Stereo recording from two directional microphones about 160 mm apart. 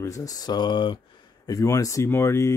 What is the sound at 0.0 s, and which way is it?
Speech, 20° left (ahead or behind).